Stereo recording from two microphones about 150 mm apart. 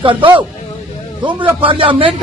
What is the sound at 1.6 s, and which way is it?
Speech, 35° right (ahead or behind).